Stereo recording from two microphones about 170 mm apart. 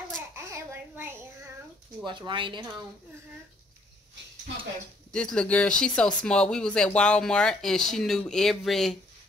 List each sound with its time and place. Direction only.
0.4 s a sound: 15° right (ahead or behind)
2.0 s speech: 30° right (ahead or behind)
5.1 s speech: 5° left (ahead or behind)